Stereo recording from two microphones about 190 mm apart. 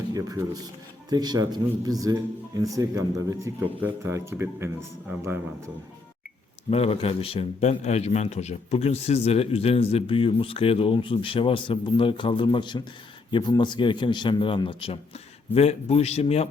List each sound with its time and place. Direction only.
0.1 s speech: 15° right (ahead or behind)
6.7 s a man's voice: 30° left (ahead or behind)